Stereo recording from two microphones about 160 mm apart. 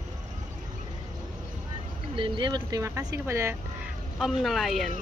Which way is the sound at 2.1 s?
30° right (ahead or behind).